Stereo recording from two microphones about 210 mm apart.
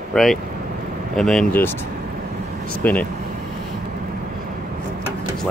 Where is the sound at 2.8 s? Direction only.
10° left (ahead or behind).